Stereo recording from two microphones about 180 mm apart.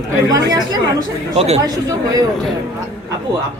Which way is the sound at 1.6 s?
20° right (ahead or behind).